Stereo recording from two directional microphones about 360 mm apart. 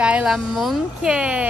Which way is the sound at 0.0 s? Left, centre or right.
Centre.